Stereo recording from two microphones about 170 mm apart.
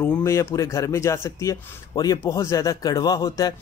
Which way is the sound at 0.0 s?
15° left (ahead or behind).